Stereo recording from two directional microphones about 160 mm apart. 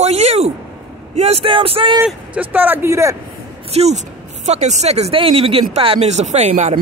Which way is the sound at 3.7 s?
40° right (ahead or behind).